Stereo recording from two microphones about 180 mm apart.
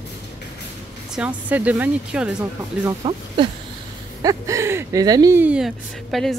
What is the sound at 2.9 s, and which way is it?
Speech, 20° right (ahead or behind).